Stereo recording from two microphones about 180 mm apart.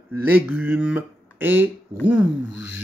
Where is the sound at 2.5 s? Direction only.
85° left.